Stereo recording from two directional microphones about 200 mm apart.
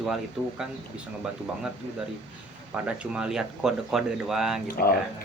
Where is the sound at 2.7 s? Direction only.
5° right (ahead or behind).